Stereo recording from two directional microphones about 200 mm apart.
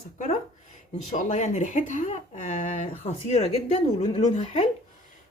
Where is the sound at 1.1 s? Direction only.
35° left (ahead or behind).